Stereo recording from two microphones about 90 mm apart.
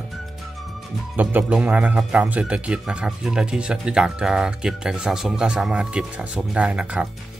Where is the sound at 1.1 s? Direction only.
20° right (ahead or behind).